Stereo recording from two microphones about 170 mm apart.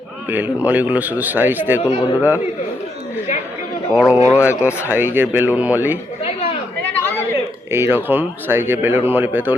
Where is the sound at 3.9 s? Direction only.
5° right (ahead or behind).